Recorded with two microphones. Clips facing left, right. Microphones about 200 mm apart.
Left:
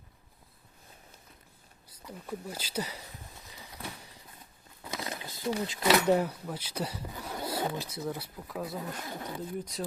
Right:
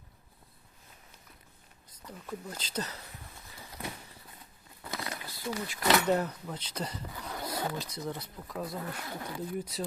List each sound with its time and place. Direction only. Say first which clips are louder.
1.9 s speech: left 2 dB; 10° left (ahead or behind)
4.8 s a sound: left 1 dB; centre (ahead or behind)
5.0 s speech: left 5 dB; 20° left (ahead or behind)
6.1 s speech: left 2 dB; 10° left (ahead or behind)
9.0 s speech: left 1 dB; 15° left (ahead or behind)
9.7 s speech: even; 5° right (ahead or behind)